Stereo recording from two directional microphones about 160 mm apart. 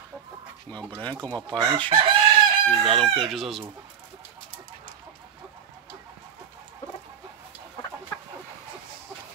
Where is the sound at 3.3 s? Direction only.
Centre (ahead or behind).